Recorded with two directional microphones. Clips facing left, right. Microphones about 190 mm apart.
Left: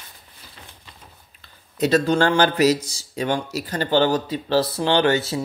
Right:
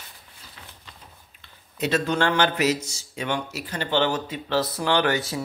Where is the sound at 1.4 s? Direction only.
40° left (ahead or behind).